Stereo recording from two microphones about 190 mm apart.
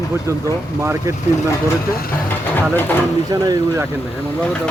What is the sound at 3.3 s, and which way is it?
Speech, 15° right (ahead or behind).